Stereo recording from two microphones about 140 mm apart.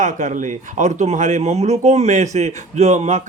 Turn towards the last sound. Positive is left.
turn(degrees=-55)  # may be behind; listen again after turning